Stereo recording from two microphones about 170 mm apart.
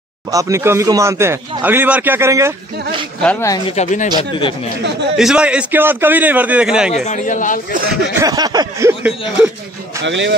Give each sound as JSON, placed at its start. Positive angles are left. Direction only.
{"t": 0.3, "sound": "a man's voice", "side_deg": -20}
{"t": 3.2, "sound": "speech", "side_deg": 10}
{"t": 3.7, "sound": "speech", "side_deg": 45}
{"t": 5.1, "sound": "a man's voice", "side_deg": -5}
{"t": 7.1, "sound": "speech", "side_deg": 45}
{"t": 7.7, "sound": "speech", "side_deg": -60}
{"t": 8.2, "sound": "a sound", "side_deg": -20}
{"t": 10.0, "sound": "speech", "side_deg": -90}